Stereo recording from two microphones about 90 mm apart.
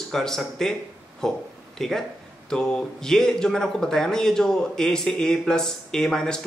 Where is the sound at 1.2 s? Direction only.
5° left (ahead or behind).